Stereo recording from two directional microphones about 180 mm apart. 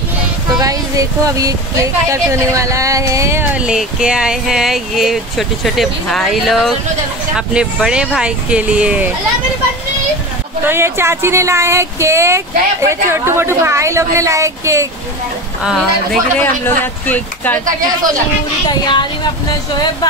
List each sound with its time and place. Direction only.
0.6 s a sound: 20° right (ahead or behind)
2.0 s speech: 15° right (ahead or behind)
10.6 s speech: 15° right (ahead or behind)
15.6 s speech: centre (ahead or behind)
16.3 s speech: 10° left (ahead or behind)
18.7 s speech: 25° left (ahead or behind)